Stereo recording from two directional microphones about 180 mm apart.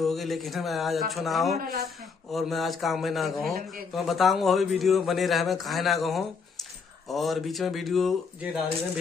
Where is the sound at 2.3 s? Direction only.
Centre (ahead or behind).